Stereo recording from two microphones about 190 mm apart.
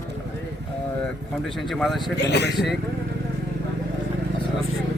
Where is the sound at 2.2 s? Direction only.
65° left (ahead or behind).